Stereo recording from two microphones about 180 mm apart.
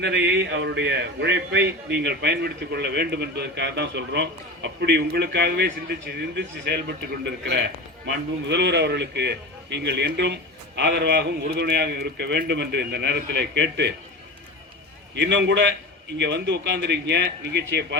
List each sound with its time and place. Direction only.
0.0 s a man's voice: 70° right (ahead or behind)
15.1 s a man's voice: 75° right (ahead or behind)